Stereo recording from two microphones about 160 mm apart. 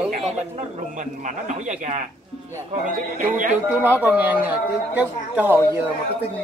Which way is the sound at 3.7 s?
10° right (ahead or behind).